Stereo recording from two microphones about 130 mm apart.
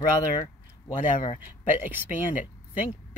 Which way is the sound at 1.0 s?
80° left.